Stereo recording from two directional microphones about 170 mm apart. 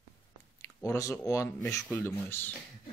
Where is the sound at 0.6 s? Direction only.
20° left (ahead or behind).